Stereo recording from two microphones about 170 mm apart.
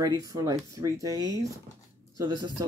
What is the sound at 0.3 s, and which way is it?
Speech, 20° right (ahead or behind).